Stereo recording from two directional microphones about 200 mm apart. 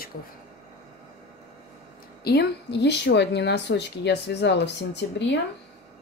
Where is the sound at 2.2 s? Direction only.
55° left (ahead or behind).